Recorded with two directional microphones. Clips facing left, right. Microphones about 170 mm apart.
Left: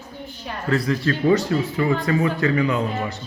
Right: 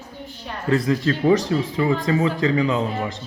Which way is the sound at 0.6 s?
20° right (ahead or behind).